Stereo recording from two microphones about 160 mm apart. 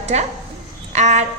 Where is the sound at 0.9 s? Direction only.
45° right (ahead or behind).